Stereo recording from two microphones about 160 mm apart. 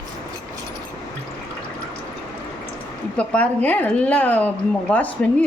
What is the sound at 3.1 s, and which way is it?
A woman's voice, 5° left (ahead or behind).